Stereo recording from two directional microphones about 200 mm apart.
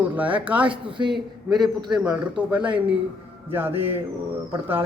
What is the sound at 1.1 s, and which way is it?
A man's voice, centre (ahead or behind).